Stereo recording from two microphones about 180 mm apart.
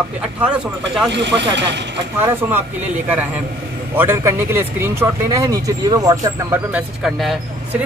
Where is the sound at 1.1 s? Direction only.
75° right (ahead or behind).